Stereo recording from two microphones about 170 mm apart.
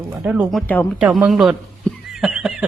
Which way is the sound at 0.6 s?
10° left (ahead or behind).